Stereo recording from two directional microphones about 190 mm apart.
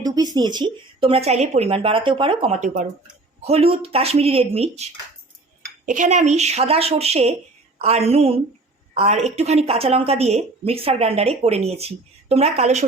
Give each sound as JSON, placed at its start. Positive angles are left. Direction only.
{"t": 0.0, "sound": "speech", "side_deg": -20}
{"t": 2.6, "sound": "a woman's voice", "side_deg": -40}
{"t": 3.4, "sound": "a woman's voice", "side_deg": -30}